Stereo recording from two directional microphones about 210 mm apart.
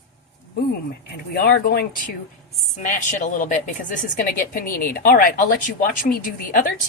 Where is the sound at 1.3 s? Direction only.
50° left (ahead or behind).